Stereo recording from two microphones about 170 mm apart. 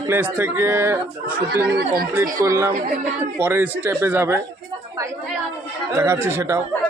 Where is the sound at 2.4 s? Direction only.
15° right (ahead or behind).